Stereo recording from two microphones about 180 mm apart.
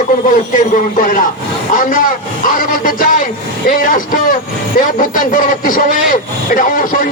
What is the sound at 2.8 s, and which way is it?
Speech, 50° left (ahead or behind).